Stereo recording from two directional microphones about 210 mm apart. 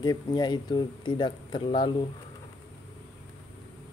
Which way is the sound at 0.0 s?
20° left (ahead or behind).